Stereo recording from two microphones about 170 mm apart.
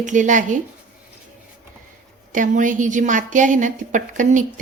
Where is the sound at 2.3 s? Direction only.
50° right (ahead or behind).